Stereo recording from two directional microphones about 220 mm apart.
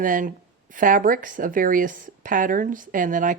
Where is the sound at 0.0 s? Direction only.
40° right (ahead or behind).